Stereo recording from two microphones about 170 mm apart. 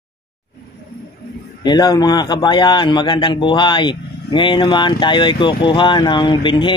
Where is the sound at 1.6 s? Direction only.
25° left (ahead or behind).